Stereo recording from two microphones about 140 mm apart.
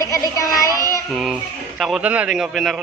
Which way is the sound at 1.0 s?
Centre (ahead or behind).